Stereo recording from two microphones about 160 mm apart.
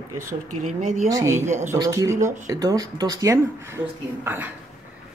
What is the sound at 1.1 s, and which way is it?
Speech, 20° right (ahead or behind).